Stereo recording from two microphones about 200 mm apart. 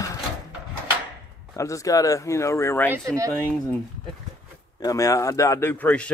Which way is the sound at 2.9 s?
15° right (ahead or behind).